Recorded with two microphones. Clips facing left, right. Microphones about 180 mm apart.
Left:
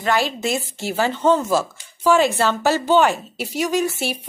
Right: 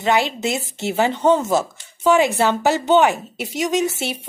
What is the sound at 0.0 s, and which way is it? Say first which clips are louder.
Speech: right 2 dB; 20° right (ahead or behind).